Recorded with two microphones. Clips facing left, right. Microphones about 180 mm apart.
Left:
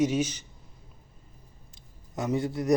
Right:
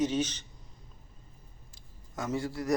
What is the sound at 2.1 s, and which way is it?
Speech, 20° left (ahead or behind).